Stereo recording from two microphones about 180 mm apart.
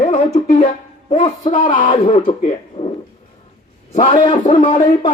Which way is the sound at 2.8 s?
35° left (ahead or behind).